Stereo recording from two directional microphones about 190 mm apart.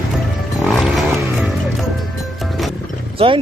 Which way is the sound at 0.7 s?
Centre (ahead or behind).